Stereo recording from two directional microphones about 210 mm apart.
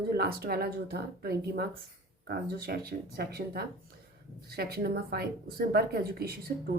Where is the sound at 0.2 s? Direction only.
45° right (ahead or behind).